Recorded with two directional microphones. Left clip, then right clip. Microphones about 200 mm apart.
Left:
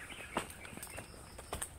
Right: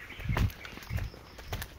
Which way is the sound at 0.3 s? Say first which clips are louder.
Right 4 dB; 55° right (ahead or behind).